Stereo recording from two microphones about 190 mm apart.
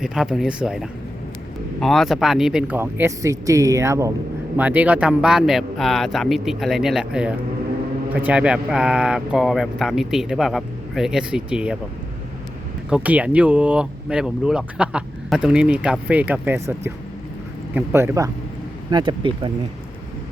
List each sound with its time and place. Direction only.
0.0 s speech: 5° right (ahead or behind)
12.9 s speech: 10° right (ahead or behind); by 19.5 s 25° right (ahead or behind)